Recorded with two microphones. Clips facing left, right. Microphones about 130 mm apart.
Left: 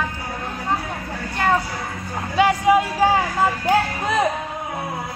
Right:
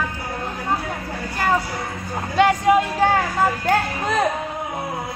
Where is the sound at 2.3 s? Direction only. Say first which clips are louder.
Even; 5° left (ahead or behind).